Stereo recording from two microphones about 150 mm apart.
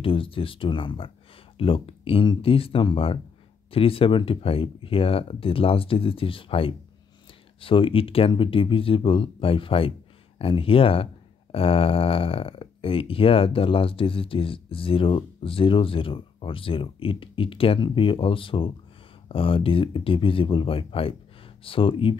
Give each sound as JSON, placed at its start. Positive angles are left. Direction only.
{"t": 0.0, "sound": "speech", "side_deg": 35}